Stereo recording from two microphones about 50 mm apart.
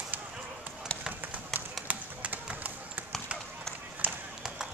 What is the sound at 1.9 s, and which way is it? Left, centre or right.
Tap, right.